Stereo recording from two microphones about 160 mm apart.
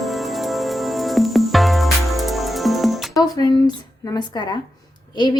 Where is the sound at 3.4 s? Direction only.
25° left (ahead or behind).